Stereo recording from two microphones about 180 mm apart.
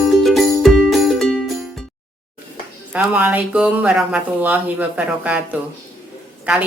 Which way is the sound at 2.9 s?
5° right (ahead or behind).